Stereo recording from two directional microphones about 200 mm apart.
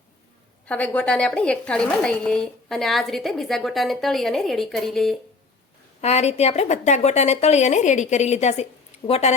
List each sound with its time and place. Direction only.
0.7 s a woman's voice: 5° left (ahead or behind)
6.0 s a woman's voice: 30° left (ahead or behind)